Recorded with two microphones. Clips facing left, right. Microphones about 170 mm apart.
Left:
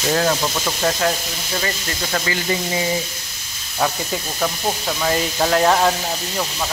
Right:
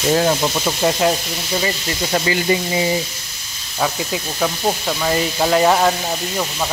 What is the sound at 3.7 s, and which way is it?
Speech, 5° right (ahead or behind).